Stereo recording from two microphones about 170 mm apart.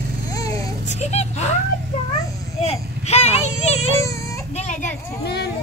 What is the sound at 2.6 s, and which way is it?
Speech, 40° left (ahead or behind).